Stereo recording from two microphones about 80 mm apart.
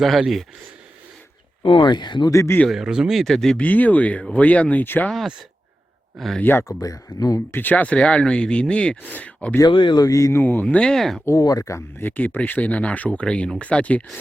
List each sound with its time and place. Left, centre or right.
0.0 s speech: centre
1.6 s speech: left
2.3 s speech: left
2.6 s speech: centre
3.6 s speech: left
5.1 s speech: centre
6.4 s speech: left
6.7 s speech: left
7.5 s speech: left
9.6 s speech: left
10.0 s speech: left
10.3 s speech: left; by 11.2 s centre
11.3 s speech: left
12.0 s speech: left